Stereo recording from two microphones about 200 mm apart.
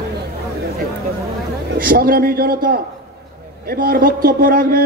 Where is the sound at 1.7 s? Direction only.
45° right (ahead or behind).